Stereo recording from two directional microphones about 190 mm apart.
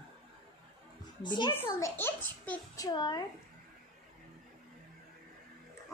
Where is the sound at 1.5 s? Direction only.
10° left (ahead or behind).